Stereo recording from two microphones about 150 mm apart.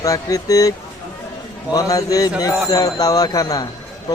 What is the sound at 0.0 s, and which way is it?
Speech, 20° left (ahead or behind).